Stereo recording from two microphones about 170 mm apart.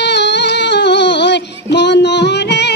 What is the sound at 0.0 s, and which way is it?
Child singing, 90° left.